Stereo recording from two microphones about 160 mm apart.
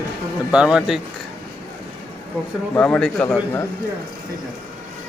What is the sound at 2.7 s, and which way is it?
Speech, 5° left (ahead or behind).